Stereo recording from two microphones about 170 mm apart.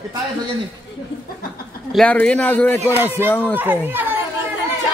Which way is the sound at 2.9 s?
15° right (ahead or behind).